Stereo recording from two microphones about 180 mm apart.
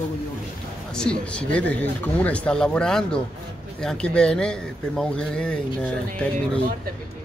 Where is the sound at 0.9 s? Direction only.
5° left (ahead or behind).